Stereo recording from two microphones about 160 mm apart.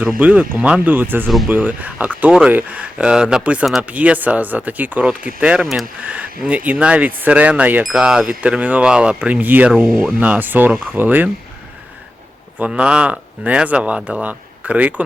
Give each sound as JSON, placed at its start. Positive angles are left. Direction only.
{"t": 0.0, "sound": "speech", "side_deg": -10}
{"t": 12.5, "sound": "speech", "side_deg": -10}